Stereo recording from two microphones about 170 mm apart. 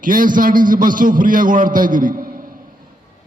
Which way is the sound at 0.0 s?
55° right (ahead or behind).